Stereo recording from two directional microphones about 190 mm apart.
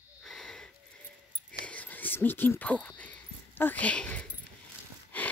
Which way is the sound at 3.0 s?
10° left (ahead or behind).